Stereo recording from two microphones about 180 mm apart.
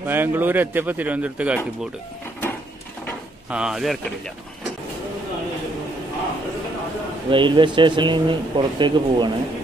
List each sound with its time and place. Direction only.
0.0 s speech: 10° right (ahead or behind)
3.4 s speech: 5° right (ahead or behind)
7.2 s speech: 25° right (ahead or behind)